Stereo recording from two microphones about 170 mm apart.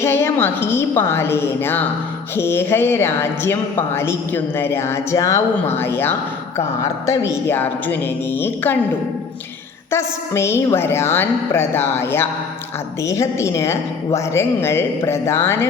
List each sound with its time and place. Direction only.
0.0 s speech: 15° left (ahead or behind)
9.9 s speech: 15° left (ahead or behind)